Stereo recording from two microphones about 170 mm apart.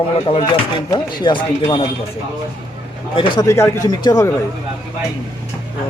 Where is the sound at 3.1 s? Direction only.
30° left (ahead or behind).